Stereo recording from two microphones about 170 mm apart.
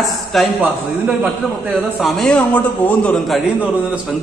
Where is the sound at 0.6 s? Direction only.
10° right (ahead or behind).